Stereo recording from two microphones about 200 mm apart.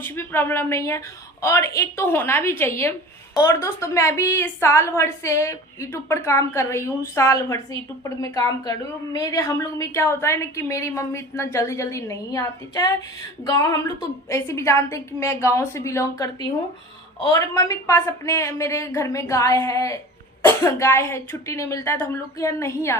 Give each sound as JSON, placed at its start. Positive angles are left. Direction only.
{"t": 0.0, "sound": "a woman's voice", "side_deg": 10}